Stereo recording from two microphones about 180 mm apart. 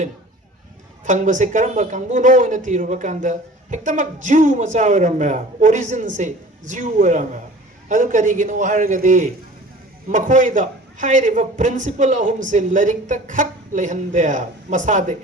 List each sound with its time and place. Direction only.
1.0 s speech: 45° right (ahead or behind)